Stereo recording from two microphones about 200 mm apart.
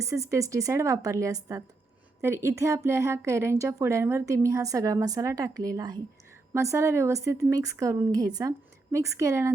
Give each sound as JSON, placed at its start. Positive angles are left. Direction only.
{"t": 0.0, "sound": "speech", "side_deg": -15}